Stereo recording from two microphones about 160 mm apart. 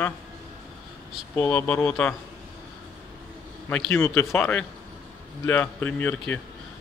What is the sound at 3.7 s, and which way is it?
A man's voice, 5° left (ahead or behind).